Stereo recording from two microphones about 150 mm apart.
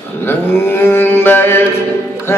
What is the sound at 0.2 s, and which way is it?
Mantra, 15° left (ahead or behind).